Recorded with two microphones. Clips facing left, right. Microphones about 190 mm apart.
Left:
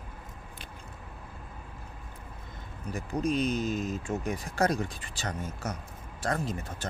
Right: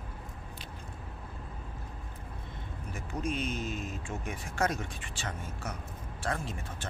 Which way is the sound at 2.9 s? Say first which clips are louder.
Left 6 dB; 35° left (ahead or behind).